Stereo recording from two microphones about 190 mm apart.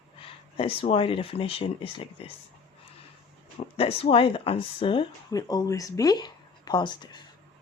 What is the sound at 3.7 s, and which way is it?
Speech, 30° left (ahead or behind).